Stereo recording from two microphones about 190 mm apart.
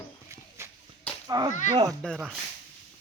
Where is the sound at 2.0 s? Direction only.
5° left (ahead or behind).